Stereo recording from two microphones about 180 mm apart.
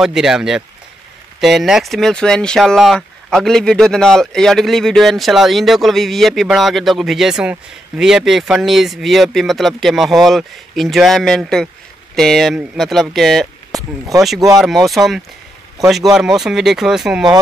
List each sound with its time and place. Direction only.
0.0 s speech: 5° right (ahead or behind)
13.7 s speech: 20° right (ahead or behind)
14.6 s speech: centre (ahead or behind)